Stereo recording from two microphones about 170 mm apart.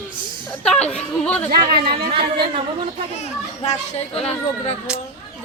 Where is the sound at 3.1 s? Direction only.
40° left (ahead or behind).